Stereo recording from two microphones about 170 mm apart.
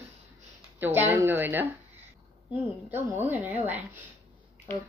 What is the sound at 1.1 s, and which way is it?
Speech, 15° right (ahead or behind).